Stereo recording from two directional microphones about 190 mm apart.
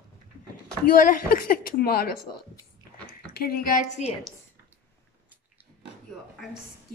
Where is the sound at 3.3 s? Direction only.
55° left (ahead or behind).